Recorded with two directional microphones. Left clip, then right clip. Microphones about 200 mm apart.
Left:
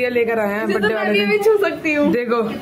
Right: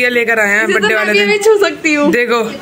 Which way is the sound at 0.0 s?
Centre (ahead or behind).